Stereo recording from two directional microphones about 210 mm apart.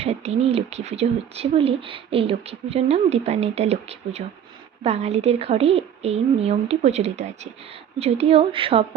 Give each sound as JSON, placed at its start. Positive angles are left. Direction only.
{"t": 0.0, "sound": "speech", "side_deg": -30}